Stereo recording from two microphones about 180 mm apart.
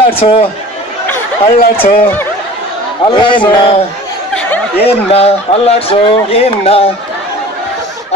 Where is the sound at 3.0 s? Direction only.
25° left (ahead or behind).